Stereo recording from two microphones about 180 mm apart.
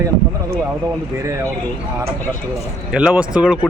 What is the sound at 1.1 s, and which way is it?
Speech, 15° right (ahead or behind).